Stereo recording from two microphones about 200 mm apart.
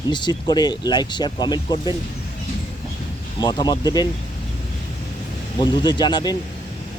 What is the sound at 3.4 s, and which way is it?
Speech, 20° left (ahead or behind).